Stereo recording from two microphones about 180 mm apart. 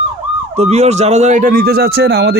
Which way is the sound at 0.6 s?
35° right (ahead or behind).